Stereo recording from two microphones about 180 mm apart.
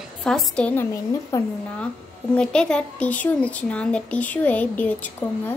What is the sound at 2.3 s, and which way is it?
Speech, 5° left (ahead or behind).